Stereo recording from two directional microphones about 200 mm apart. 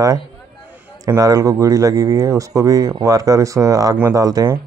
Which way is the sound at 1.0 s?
15° right (ahead or behind).